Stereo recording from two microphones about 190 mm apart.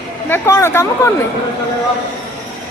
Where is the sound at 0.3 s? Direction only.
15° left (ahead or behind).